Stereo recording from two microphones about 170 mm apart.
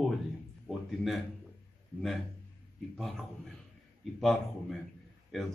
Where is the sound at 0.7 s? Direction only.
Centre (ahead or behind).